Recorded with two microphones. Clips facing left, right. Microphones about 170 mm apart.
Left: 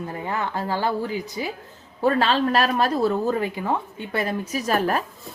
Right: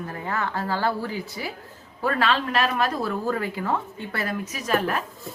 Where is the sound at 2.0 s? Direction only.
30° left (ahead or behind).